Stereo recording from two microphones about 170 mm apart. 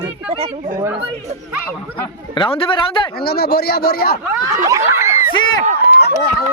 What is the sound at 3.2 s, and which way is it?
Speech, 65° left (ahead or behind).